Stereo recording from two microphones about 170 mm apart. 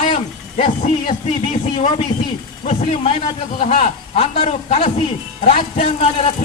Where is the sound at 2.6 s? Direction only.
35° left (ahead or behind).